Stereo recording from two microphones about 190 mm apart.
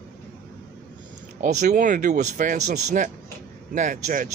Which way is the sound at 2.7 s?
55° right (ahead or behind).